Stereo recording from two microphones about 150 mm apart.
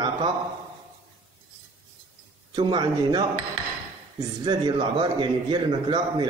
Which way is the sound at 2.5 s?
30° right (ahead or behind).